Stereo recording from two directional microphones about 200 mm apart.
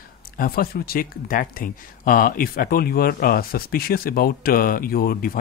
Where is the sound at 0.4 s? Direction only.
45° left (ahead or behind).